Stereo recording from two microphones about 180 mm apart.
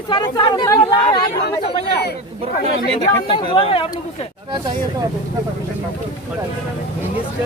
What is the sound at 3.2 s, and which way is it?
Speech, 30° left (ahead or behind).